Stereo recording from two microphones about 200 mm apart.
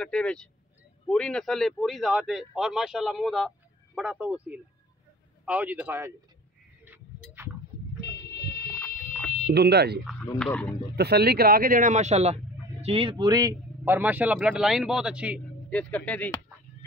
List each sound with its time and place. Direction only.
0.0 s a man's voice: 5° left (ahead or behind)
6.8 s a sound: 10° right (ahead or behind)
8.0 s vehicle: 55° left (ahead or behind)
8.7 s fire alarm: 5° left (ahead or behind)
9.5 s speech: 55° right (ahead or behind)
10.4 s speech: 5° left (ahead or behind)
11.0 s a man's voice: 55° right (ahead or behind); by 15.4 s 5° right (ahead or behind)
15.7 s music: 5° left (ahead or behind)